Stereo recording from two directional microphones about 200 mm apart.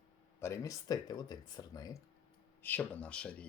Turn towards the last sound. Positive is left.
turn(degrees=5)  # may be behind; listen again after turning